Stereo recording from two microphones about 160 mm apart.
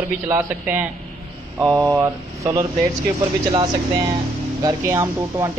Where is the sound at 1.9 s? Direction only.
20° right (ahead or behind).